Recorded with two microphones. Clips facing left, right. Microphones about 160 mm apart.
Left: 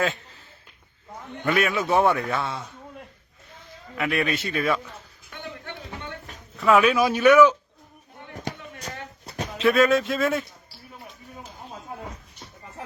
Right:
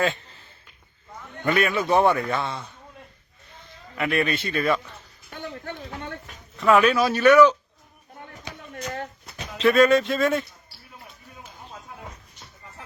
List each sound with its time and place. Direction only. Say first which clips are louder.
1.5 s a man's voice: right 1 dB; centre (ahead or behind)
3.9 s a man's voice: right 1 dB; centre (ahead or behind)
5.3 s a sound: right 3 dB; 40° right (ahead or behind)
6.6 s speech: even; 5° left (ahead or behind)
9.2 s a sound: left 7 dB; 45° left (ahead or behind)
9.6 s a man's voice: right 2 dB; 5° left (ahead or behind)